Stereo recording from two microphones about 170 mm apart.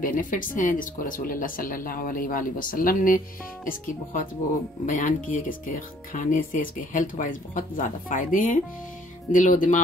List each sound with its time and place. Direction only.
0.0 s speech: 50° left (ahead or behind)